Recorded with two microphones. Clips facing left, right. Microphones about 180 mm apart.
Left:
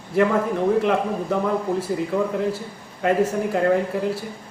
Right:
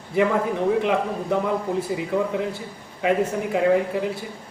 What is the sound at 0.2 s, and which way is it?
A man's voice, centre (ahead or behind).